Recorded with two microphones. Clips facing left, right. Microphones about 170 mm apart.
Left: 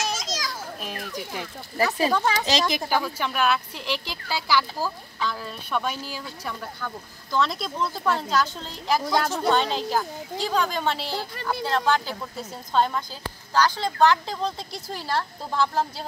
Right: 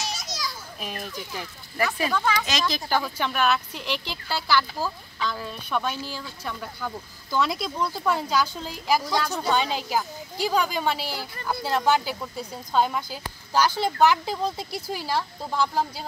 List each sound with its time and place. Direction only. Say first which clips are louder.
0.2 s children playing: left 2 dB; 90° left
1.4 s speech: left 2 dB; 35° left (ahead or behind)
2.9 s speech: even; 5° left (ahead or behind)
6.8 s speech: right 1 dB; 5° right (ahead or behind)
9.0 s speech: left 3 dB; 55° left (ahead or behind)
9.5 s speech: left 2 dB; 5° right (ahead or behind)